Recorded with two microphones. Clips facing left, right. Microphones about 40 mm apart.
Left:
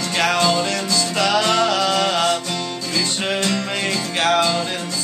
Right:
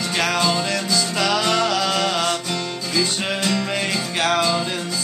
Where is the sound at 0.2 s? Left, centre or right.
Centre.